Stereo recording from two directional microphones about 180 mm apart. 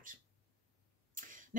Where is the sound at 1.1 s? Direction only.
45° right (ahead or behind).